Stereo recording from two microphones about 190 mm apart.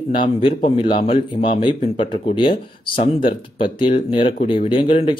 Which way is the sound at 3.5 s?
25° left (ahead or behind).